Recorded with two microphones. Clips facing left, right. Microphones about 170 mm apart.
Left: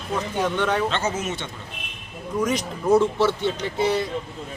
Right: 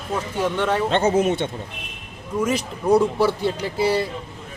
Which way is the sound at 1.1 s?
55° right (ahead or behind).